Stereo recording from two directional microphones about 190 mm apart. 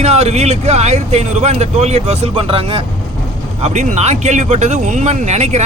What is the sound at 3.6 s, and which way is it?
Speech, 40° right (ahead or behind).